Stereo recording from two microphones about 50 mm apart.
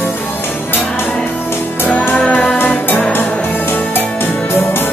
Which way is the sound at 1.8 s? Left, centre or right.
Left.